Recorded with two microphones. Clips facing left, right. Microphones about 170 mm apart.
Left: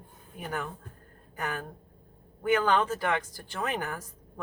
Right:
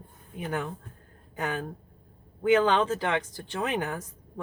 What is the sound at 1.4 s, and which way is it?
Speech, 25° right (ahead or behind).